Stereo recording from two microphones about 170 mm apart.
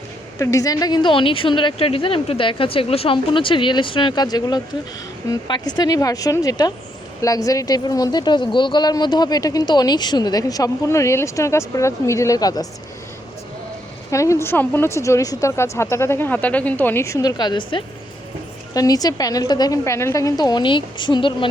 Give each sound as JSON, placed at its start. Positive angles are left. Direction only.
{"t": 0.3, "sound": "a woman's voice", "side_deg": 20}
{"t": 14.1, "sound": "a woman's voice", "side_deg": 15}
{"t": 18.7, "sound": "a woman's voice", "side_deg": 20}